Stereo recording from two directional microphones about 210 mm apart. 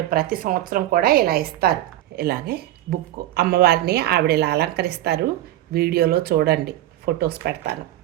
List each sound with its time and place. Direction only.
0.1 s a woman's voice: 45° right (ahead or behind)